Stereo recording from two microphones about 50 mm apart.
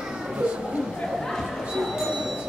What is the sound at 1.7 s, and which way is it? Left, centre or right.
Music, centre.